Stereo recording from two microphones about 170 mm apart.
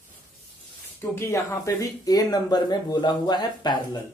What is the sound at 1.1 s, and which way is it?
Speech, 15° left (ahead or behind).